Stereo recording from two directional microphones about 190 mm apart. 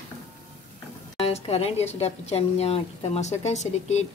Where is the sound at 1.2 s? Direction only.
30° left (ahead or behind).